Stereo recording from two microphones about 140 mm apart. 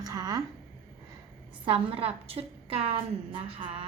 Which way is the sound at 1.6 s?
35° right (ahead or behind).